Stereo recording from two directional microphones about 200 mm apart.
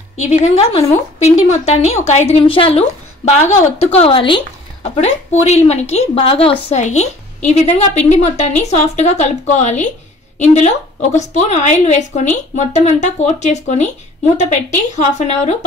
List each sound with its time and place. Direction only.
0.2 s a woman's voice: 35° left (ahead or behind)